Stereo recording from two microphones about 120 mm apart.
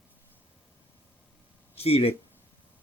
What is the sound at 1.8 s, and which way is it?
Speech, 55° left (ahead or behind).